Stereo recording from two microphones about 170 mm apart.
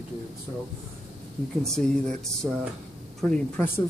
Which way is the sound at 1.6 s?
5° left (ahead or behind).